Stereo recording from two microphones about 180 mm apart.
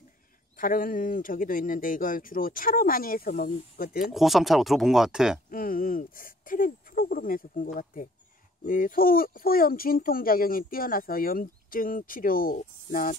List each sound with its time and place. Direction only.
0.6 s speech: 50° left (ahead or behind)
4.0 s speech: centre (ahead or behind)
5.5 s speech: 50° left (ahead or behind)